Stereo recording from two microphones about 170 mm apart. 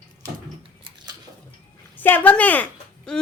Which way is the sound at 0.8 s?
25° right (ahead or behind).